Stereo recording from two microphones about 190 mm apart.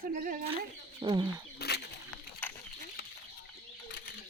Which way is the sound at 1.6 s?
60° left (ahead or behind).